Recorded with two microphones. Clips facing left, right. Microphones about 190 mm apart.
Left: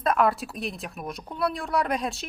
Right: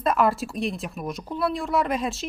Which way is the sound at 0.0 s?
Centre (ahead or behind).